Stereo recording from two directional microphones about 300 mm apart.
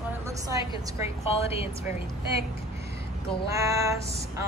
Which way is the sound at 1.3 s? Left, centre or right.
Centre.